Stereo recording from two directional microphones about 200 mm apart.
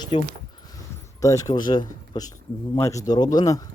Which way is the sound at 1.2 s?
15° left (ahead or behind).